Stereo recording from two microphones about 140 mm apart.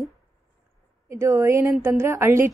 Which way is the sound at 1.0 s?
20° right (ahead or behind).